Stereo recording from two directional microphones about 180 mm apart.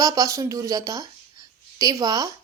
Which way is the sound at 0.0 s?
20° right (ahead or behind).